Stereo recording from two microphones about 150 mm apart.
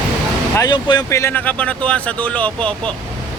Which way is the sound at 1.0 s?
20° left (ahead or behind).